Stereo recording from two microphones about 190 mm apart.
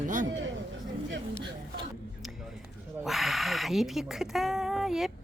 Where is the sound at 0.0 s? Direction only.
45° right (ahead or behind).